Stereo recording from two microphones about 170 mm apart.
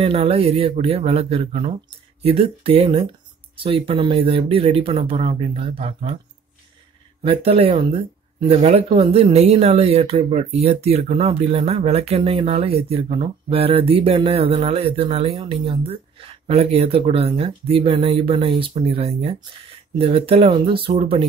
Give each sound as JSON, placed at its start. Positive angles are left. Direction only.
{"t": 0.0, "sound": "speech", "side_deg": -35}
{"t": 7.2, "sound": "speech", "side_deg": -35}